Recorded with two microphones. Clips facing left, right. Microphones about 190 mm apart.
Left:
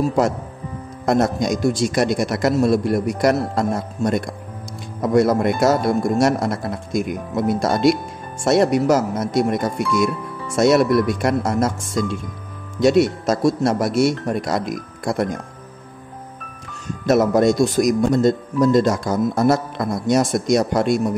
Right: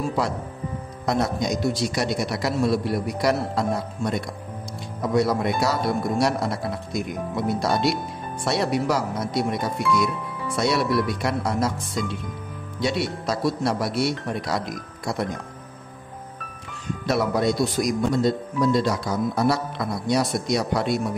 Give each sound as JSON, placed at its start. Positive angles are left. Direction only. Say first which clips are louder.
{"t": 0.0, "sound": "speech", "louder": "left 6 dB", "side_deg": 45}
{"t": 10.9, "sound": "speech", "louder": "left 6 dB", "side_deg": -5}
{"t": 11.1, "sound": "speech", "louder": "left 5 dB", "side_deg": 50}
{"t": 17.0, "sound": "speech", "louder": "left 7 dB", "side_deg": 45}